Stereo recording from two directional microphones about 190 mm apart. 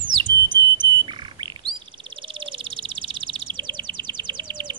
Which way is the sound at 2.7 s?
25° right (ahead or behind).